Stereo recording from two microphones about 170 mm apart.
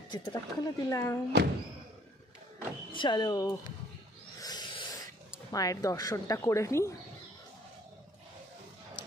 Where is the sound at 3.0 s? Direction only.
25° left (ahead or behind).